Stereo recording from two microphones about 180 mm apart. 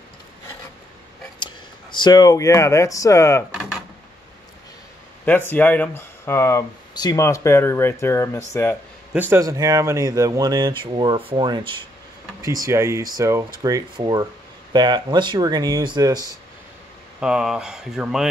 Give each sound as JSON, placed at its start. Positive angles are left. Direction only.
{"t": 1.4, "sound": "speech", "side_deg": 25}
{"t": 5.2, "sound": "speech", "side_deg": 10}
{"t": 9.1, "sound": "speech", "side_deg": -10}
{"t": 17.2, "sound": "speech", "side_deg": -5}